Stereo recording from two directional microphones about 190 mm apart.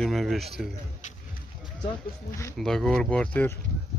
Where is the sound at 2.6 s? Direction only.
Centre (ahead or behind).